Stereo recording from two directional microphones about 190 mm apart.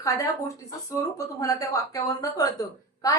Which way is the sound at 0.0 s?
15° left (ahead or behind).